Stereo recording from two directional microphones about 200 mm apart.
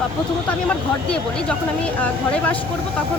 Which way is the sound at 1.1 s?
5° left (ahead or behind).